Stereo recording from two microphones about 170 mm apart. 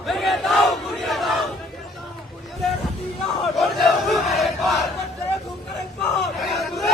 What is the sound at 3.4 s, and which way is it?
Battle cry, centre (ahead or behind).